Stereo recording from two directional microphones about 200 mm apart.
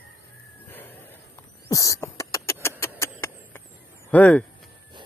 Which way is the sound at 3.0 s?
10° left (ahead or behind).